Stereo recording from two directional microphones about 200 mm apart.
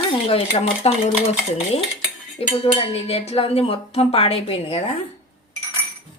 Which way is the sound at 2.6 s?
30° left (ahead or behind).